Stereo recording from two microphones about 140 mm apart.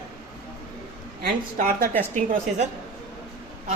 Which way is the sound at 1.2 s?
85° right.